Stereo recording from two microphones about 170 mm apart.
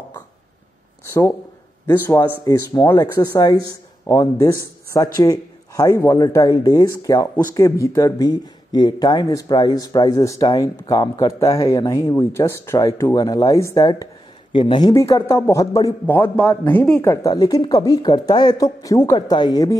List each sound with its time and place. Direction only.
1.9 s a man's voice: 15° left (ahead or behind)
17.1 s speech: 20° left (ahead or behind)